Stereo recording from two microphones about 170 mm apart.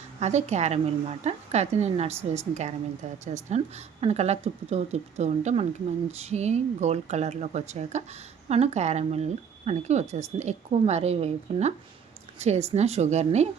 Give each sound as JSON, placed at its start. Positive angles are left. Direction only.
{"t": 0.2, "sound": "a woman's voice", "side_deg": -40}